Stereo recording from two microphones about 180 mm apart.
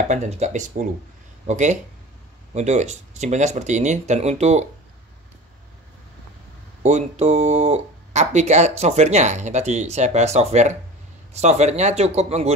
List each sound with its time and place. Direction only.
0.1 s speech: 40° right (ahead or behind)
6.8 s speech: 40° right (ahead or behind)